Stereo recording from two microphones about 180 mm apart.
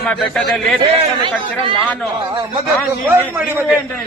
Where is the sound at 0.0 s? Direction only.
5° left (ahead or behind).